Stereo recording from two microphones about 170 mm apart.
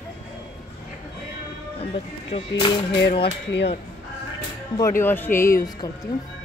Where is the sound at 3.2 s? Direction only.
90° left.